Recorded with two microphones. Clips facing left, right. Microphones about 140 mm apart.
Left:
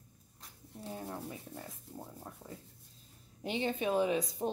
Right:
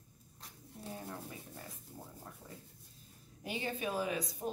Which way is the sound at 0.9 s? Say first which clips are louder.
Left 4 dB; 20° left (ahead or behind).